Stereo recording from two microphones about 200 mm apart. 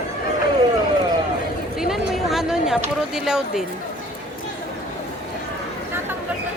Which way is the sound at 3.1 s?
5° right (ahead or behind).